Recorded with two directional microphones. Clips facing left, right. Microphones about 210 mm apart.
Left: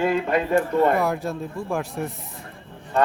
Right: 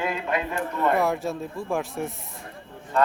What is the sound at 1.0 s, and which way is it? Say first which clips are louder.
A man's voice: left 1 dB; centre (ahead or behind).